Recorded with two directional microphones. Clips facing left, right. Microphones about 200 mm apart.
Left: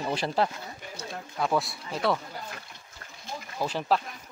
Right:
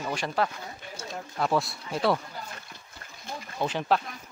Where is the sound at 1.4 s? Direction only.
Centre (ahead or behind).